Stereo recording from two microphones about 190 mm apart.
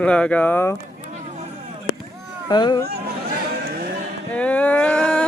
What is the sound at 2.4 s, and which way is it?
Speech, 20° left (ahead or behind).